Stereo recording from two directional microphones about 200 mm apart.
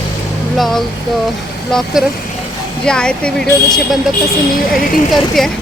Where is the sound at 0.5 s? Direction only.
Centre (ahead or behind).